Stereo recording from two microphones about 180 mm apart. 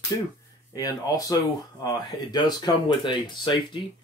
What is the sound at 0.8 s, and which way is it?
Speech, 20° left (ahead or behind).